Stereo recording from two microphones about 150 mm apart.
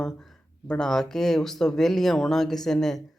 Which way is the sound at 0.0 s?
5° left (ahead or behind).